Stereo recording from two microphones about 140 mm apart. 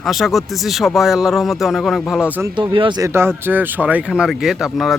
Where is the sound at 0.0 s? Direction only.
Centre (ahead or behind).